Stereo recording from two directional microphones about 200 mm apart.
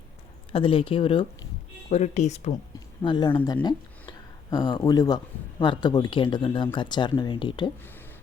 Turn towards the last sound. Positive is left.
turn(degrees=25)  # may be behind; listen again after turning